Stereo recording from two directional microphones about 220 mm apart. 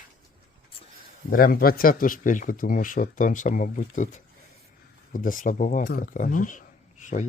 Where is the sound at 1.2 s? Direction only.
40° left (ahead or behind).